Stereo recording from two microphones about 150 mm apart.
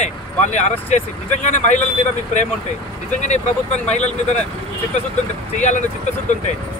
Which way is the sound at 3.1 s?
50° left (ahead or behind).